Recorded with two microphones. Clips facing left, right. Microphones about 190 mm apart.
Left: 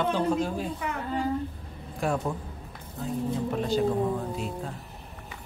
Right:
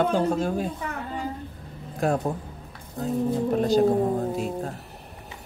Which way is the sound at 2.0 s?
40° right (ahead or behind).